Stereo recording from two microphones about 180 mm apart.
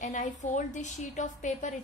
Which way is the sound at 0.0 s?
40° left (ahead or behind).